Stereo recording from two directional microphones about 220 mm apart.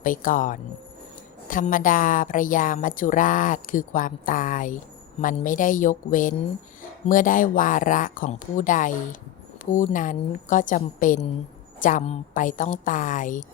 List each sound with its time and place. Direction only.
0.0 s a woman's voice: 35° left (ahead or behind)